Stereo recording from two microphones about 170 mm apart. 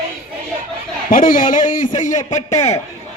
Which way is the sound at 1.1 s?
55° left (ahead or behind).